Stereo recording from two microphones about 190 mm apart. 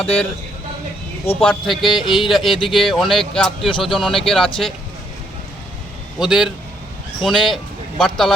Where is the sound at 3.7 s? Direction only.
25° left (ahead or behind).